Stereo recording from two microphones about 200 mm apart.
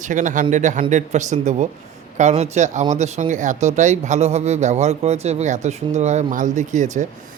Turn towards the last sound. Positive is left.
turn(degrees=-40)  # may be behind; listen again after turning